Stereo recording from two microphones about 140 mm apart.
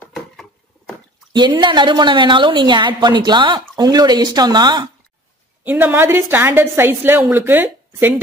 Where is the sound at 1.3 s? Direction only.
35° right (ahead or behind).